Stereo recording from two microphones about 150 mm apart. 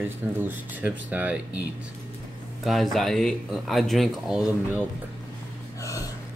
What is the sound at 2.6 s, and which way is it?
Speech, centre (ahead or behind).